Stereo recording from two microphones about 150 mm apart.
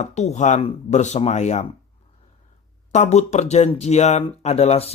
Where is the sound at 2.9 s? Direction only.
50° left (ahead or behind).